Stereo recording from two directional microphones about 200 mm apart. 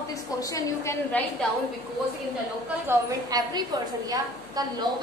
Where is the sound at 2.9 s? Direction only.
15° right (ahead or behind).